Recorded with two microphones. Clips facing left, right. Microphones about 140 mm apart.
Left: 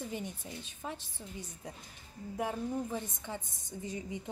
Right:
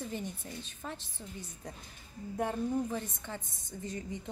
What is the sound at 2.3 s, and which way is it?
A woman's voice, 10° left (ahead or behind).